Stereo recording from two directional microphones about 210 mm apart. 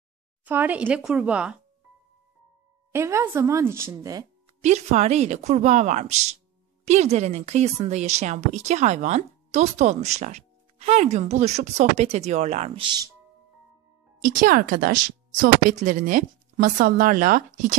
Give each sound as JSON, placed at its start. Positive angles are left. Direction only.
{"t": 0.5, "sound": "speech", "side_deg": -10}
{"t": 2.9, "sound": "speech", "side_deg": -15}
{"t": 4.6, "sound": "speech", "side_deg": -35}
{"t": 14.2, "sound": "speech", "side_deg": -40}